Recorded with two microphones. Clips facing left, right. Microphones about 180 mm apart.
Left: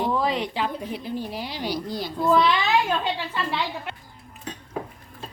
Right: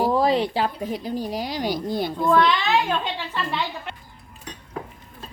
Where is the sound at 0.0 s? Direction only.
35° right (ahead or behind); by 2.1 s 55° right (ahead or behind).